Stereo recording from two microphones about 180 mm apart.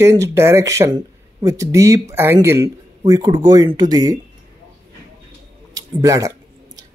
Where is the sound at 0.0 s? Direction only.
15° right (ahead or behind).